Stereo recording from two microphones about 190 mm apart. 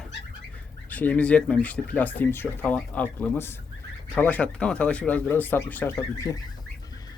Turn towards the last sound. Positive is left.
turn(degrees=10)  # may be behind; listen again after turning